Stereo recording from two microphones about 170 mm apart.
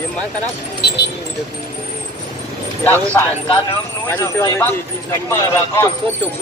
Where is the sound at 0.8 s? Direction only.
75° left (ahead or behind).